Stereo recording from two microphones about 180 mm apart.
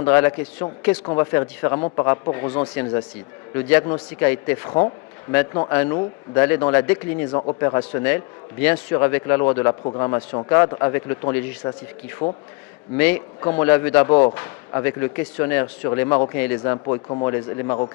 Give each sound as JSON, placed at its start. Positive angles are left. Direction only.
{"t": 0.0, "sound": "speech", "side_deg": 15}
{"t": 7.3, "sound": "speech", "side_deg": 25}
{"t": 12.2, "sound": "a man's voice", "side_deg": 30}
{"t": 13.0, "sound": "speech", "side_deg": 10}
{"t": 14.1, "sound": "speech", "side_deg": 25}
{"t": 14.3, "sound": "speech", "side_deg": 15}
{"t": 16.7, "sound": "speech", "side_deg": 25}